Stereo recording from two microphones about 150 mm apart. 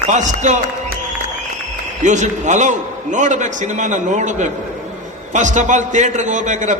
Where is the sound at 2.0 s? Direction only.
55° right (ahead or behind).